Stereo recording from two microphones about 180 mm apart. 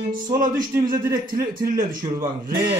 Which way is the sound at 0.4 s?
50° right (ahead or behind).